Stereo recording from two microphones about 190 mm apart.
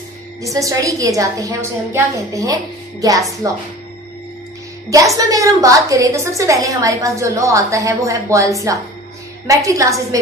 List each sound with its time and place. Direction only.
0.4 s a woman's voice: 15° right (ahead or behind)
4.9 s a woman's voice: 15° right (ahead or behind)